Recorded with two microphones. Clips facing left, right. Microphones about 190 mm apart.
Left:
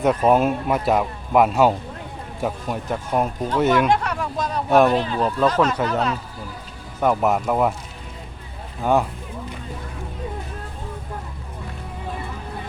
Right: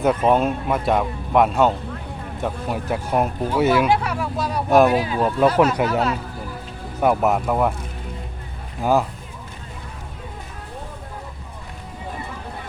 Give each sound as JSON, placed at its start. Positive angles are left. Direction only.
{"t": 0.0, "sound": "speech", "side_deg": 0}
{"t": 8.8, "sound": "speech", "side_deg": -5}